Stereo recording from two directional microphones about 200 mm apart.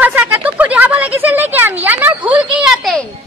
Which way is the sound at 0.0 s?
10° right (ahead or behind).